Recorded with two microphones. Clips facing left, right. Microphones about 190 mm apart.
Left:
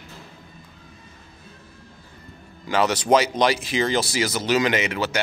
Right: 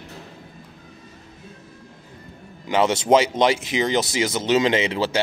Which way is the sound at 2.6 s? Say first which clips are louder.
Right 2 dB; 25° right (ahead or behind).